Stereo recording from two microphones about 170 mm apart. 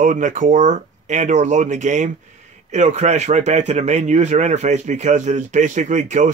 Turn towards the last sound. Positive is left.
turn(degrees=-45)  # may be behind; listen again after turning